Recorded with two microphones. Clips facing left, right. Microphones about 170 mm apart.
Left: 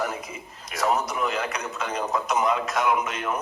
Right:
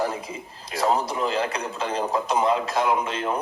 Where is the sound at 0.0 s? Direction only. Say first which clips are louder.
Right 3 dB; 30° right (ahead or behind).